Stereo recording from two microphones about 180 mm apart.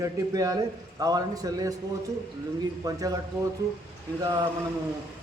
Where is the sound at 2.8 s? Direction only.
20° right (ahead or behind).